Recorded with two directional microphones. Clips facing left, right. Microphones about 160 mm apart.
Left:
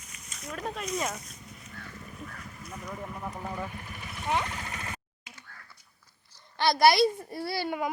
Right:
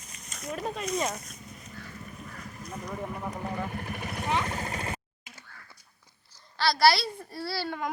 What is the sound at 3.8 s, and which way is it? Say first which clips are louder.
Speech: right 7 dB; 55° right (ahead or behind).